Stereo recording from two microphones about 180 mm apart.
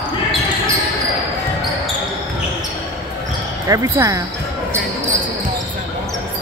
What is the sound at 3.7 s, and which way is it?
Speech, 20° right (ahead or behind).